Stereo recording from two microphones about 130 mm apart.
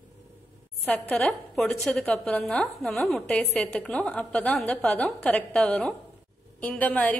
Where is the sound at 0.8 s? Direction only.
5° left (ahead or behind).